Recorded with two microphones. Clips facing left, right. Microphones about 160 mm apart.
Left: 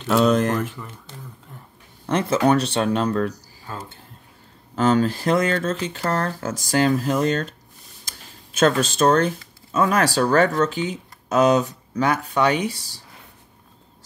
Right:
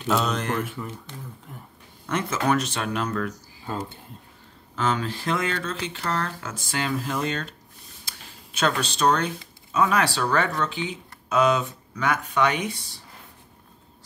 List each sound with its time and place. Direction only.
0.1 s speech: 50° left (ahead or behind)
0.8 s speech: 5° right (ahead or behind)
2.0 s speech: 35° left (ahead or behind)
4.7 s speech: 40° left (ahead or behind)
8.5 s speech: 45° left (ahead or behind)